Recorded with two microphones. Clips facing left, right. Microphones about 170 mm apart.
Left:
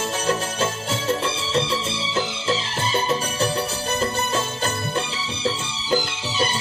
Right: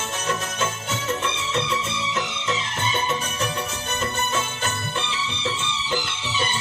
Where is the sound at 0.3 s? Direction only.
35° left (ahead or behind).